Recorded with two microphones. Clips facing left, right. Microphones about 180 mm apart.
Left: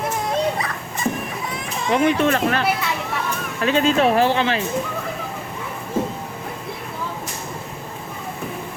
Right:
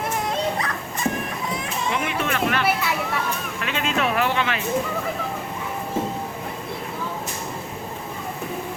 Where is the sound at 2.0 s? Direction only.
35° left (ahead or behind).